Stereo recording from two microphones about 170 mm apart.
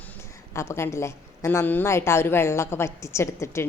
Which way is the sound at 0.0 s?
10° left (ahead or behind).